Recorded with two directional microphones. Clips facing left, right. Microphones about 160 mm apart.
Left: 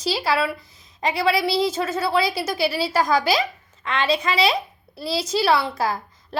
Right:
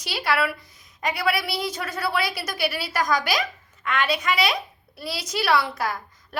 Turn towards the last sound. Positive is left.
turn(degrees=30)  # may be behind; listen again after turning